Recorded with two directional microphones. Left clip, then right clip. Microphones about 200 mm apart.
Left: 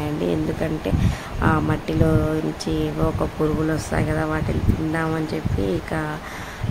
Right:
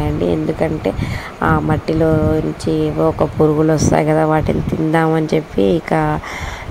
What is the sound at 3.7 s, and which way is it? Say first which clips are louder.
Speech: right 10 dB; 25° right (ahead or behind).